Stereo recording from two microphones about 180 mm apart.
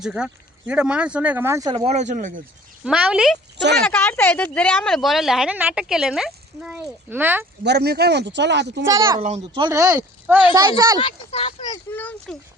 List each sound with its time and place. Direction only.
0.0 s speech: 5° right (ahead or behind)
1.7 s speech: 35° right (ahead or behind)
2.8 s speech: 5° right (ahead or behind)
3.8 s speech: 10° left (ahead or behind); by 7.4 s 10° right (ahead or behind)
7.6 s speech: 65° right (ahead or behind)
8.9 s speech: 20° right (ahead or behind)
11.0 s speech: 35° left (ahead or behind)
11.9 s speech: 10° left (ahead or behind)